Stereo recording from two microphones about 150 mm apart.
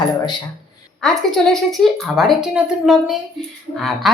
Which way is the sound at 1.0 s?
Centre (ahead or behind).